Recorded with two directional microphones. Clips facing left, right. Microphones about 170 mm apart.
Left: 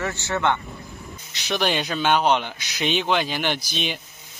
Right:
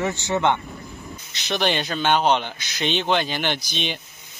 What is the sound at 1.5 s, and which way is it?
Speech, 5° left (ahead or behind).